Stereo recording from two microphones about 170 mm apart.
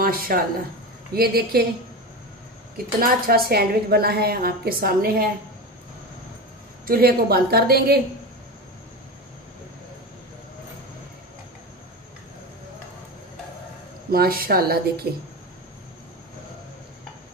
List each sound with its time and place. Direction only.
0.0 s a woman's voice: 60° right (ahead or behind)
3.0 s a woman's voice: 60° right (ahead or behind)
6.9 s a woman's voice: 65° right (ahead or behind)
14.1 s a woman's voice: 60° right (ahead or behind)